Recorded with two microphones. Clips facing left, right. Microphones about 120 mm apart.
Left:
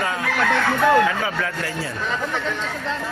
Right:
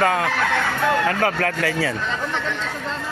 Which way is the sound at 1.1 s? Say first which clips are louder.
Right 4 dB; 65° right (ahead or behind).